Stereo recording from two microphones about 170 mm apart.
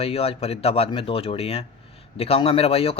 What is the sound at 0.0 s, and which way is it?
A man's voice, 35° left (ahead or behind).